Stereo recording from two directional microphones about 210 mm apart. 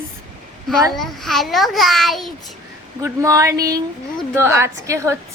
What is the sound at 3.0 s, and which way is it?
A woman's voice, 15° right (ahead or behind).